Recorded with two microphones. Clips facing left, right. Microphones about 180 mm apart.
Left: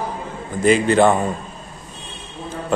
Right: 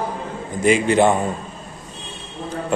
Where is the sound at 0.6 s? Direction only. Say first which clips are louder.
Left 1 dB; 15° right (ahead or behind).